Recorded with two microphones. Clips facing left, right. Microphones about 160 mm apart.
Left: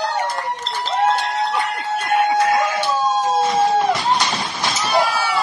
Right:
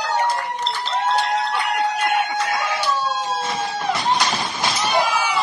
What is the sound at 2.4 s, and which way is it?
Chicken, 50° left (ahead or behind).